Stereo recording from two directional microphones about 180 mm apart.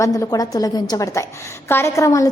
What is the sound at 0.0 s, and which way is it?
A woman's voice, 20° left (ahead or behind).